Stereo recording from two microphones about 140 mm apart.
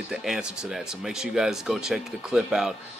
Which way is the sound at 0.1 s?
5° right (ahead or behind).